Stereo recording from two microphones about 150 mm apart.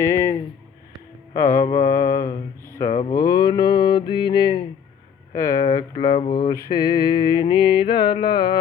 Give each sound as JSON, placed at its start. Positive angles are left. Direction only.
{"t": 0.0, "sound": "a sound", "side_deg": 20}
{"t": 1.3, "sound": "mantra", "side_deg": 20}
{"t": 5.3, "sound": "mantra", "side_deg": 20}
{"t": 5.9, "sound": "mantra", "side_deg": 35}